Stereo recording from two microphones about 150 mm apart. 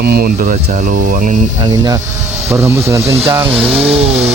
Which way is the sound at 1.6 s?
30° right (ahead or behind).